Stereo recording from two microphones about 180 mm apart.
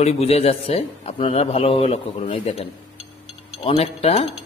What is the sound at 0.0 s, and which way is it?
A man's voice, 35° left (ahead or behind).